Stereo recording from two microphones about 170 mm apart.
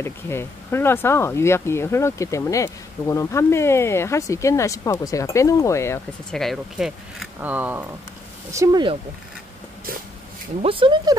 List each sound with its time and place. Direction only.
0.0 s speech: 15° left (ahead or behind)
6.3 s speech: centre (ahead or behind); by 8.8 s 20° right (ahead or behind)
10.6 s speech: 30° right (ahead or behind)